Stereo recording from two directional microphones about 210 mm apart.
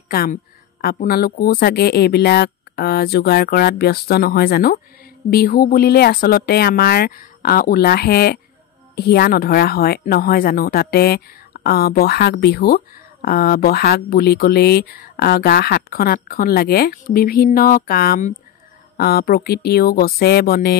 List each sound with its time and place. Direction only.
0.1 s speech: 45° left (ahead or behind)